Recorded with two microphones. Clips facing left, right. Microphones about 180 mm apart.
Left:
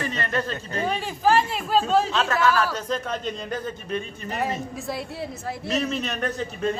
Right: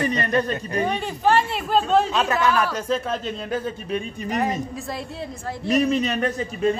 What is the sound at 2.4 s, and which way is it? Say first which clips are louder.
A man's voice: right 1 dB; 15° right (ahead or behind).